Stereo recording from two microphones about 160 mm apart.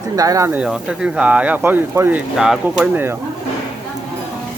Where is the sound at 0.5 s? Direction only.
5° right (ahead or behind).